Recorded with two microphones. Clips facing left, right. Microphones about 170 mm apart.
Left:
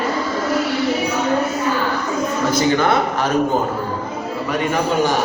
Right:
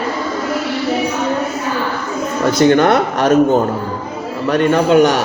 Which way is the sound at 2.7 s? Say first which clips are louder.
Right 5 dB; 65° right (ahead or behind).